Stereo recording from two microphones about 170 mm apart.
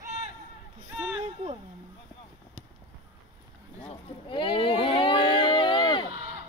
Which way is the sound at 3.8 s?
30° left (ahead or behind).